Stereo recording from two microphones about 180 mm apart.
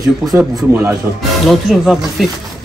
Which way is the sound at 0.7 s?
10° right (ahead or behind).